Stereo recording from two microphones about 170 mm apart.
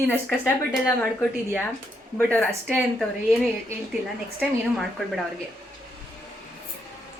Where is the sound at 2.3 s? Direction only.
5° left (ahead or behind).